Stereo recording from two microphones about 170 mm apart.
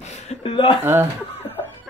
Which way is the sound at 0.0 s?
35° left (ahead or behind).